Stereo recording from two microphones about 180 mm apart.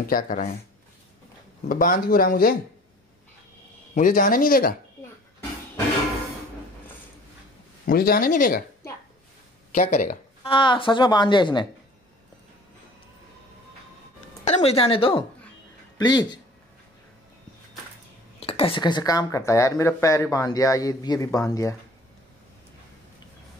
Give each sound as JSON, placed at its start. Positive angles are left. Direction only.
{"t": 0.0, "sound": "speech", "side_deg": 50}
{"t": 1.7, "sound": "speech", "side_deg": 50}
{"t": 3.9, "sound": "speech", "side_deg": 45}
{"t": 7.8, "sound": "speech", "side_deg": 55}
{"t": 9.7, "sound": "speech", "side_deg": 45}
{"t": 10.4, "sound": "speech", "side_deg": 30}
{"t": 14.4, "sound": "speech", "side_deg": 35}
{"t": 18.4, "sound": "speech", "side_deg": 30}